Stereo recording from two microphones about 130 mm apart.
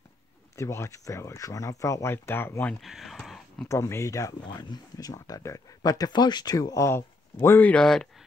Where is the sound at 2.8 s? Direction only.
Centre (ahead or behind).